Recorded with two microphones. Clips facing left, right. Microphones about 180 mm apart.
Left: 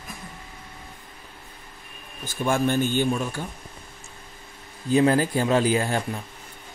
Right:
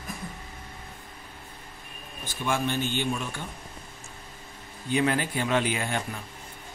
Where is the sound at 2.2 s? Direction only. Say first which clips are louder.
Left 5 dB; 45° left (ahead or behind).